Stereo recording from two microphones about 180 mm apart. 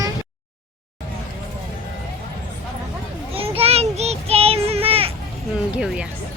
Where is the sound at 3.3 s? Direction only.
35° right (ahead or behind).